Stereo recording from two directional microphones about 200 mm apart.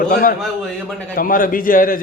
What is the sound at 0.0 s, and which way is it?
Speech, 45° left (ahead or behind).